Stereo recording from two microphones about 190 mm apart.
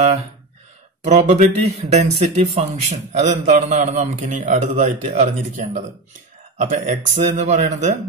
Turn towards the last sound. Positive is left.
turn(degrees=-40)  # may be behind; listen again after turning